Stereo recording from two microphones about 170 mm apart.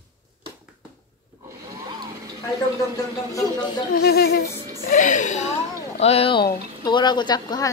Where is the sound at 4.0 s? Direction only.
70° left (ahead or behind).